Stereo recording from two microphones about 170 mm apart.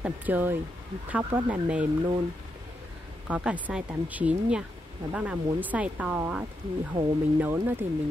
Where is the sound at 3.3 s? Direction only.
10° right (ahead or behind).